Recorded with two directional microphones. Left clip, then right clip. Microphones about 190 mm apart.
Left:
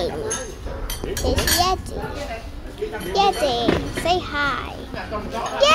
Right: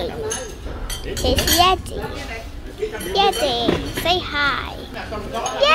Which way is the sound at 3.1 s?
10° left (ahead or behind).